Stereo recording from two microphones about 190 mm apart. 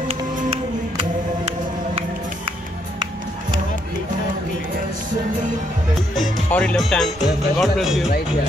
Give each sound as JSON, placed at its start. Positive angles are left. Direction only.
{"t": 0.1, "sound": "music", "side_deg": -35}
{"t": 6.1, "sound": "speech", "side_deg": 5}